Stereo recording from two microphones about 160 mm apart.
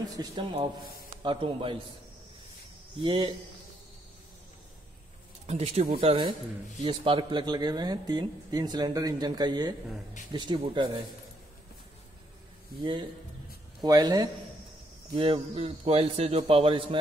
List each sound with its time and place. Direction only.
0.1 s a man's voice: 30° right (ahead or behind)
3.0 s a man's voice: 30° right (ahead or behind)
5.5 s speech: 45° right (ahead or behind)
5.9 s a man's voice: 30° right (ahead or behind)
13.7 s a man's voice: 25° right (ahead or behind)